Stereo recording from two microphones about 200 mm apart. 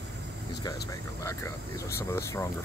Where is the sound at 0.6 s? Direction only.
15° left (ahead or behind).